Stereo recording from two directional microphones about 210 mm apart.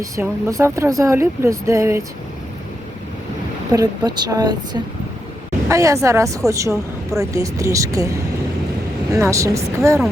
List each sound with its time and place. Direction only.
0.0 s a woman's voice: 15° right (ahead or behind)
3.7 s a woman's voice: 20° right (ahead or behind)
9.1 s a woman's voice: 15° right (ahead or behind)